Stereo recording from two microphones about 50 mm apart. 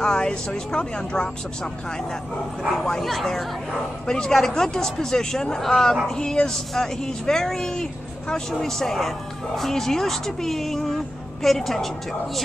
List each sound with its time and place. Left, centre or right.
0.0 s speech: centre
2.8 s speech: centre